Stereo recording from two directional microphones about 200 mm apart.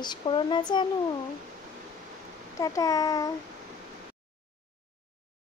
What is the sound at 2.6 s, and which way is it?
Speech, 15° left (ahead or behind).